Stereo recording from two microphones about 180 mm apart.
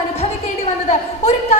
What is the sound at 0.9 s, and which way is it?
Speech, 35° left (ahead or behind).